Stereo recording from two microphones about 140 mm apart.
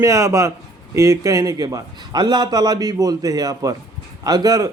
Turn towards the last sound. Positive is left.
turn(degrees=-25)  # may be behind; listen again after turning